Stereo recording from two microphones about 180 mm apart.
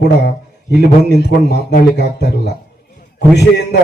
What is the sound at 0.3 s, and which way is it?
A man's voice, 65° left (ahead or behind).